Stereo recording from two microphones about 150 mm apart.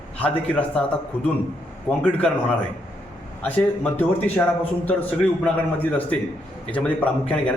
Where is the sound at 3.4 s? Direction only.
15° left (ahead or behind).